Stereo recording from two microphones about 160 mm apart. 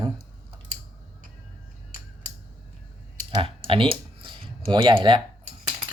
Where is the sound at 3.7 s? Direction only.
35° right (ahead or behind).